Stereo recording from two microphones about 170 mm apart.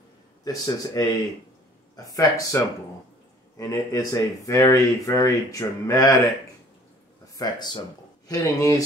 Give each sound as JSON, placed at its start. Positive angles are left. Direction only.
{"t": 0.4, "sound": "speech", "side_deg": 20}
{"t": 2.0, "sound": "speech", "side_deg": 20}
{"t": 7.3, "sound": "speech", "side_deg": 25}